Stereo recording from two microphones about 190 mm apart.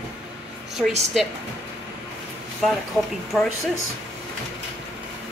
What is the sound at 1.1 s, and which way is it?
Speech, centre (ahead or behind).